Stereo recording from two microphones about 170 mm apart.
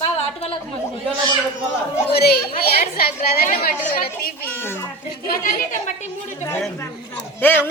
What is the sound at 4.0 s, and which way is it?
Children playing, 60° left (ahead or behind).